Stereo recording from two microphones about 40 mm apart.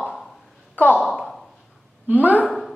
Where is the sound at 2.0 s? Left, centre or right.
Right.